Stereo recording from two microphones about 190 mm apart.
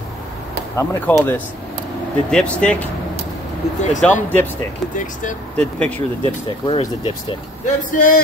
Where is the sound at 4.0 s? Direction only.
10° left (ahead or behind).